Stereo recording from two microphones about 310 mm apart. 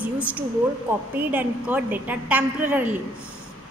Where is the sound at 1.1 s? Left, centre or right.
Centre.